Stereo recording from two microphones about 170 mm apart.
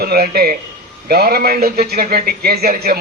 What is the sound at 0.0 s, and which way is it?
A man's voice, 65° right (ahead or behind).